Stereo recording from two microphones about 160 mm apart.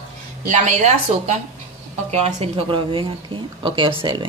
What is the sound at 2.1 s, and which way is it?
A woman's voice, 40° right (ahead or behind).